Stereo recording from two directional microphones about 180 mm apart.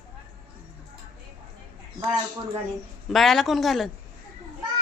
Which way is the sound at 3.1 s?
Centre (ahead or behind).